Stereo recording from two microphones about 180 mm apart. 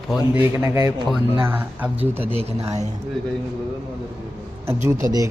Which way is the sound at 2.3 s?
35° right (ahead or behind).